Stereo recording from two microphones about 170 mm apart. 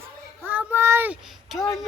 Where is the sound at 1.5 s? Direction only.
20° left (ahead or behind).